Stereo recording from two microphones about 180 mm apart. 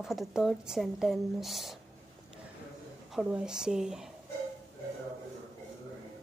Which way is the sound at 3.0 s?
5° right (ahead or behind).